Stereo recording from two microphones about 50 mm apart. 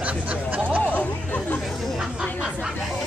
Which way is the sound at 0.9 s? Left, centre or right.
Left.